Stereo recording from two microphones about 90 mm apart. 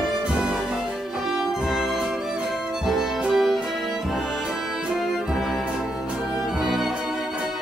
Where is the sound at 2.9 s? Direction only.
5° right (ahead or behind).